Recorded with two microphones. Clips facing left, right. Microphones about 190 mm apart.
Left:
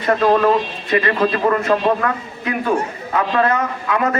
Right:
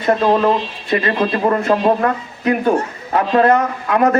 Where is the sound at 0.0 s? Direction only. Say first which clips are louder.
Right 1 dB; 25° right (ahead or behind).